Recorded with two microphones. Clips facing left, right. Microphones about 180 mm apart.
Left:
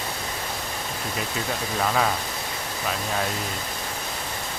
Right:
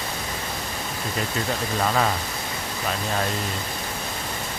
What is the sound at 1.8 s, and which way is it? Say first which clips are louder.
Speech: even; centre (ahead or behind).